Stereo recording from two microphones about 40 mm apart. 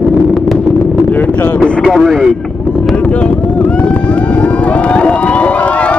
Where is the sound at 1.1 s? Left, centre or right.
Left.